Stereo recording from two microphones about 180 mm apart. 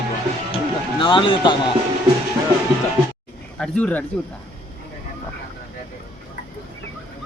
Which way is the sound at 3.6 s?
10° left (ahead or behind).